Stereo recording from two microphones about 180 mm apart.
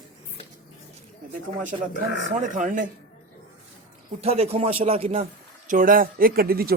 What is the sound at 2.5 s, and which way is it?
Speech, 45° right (ahead or behind).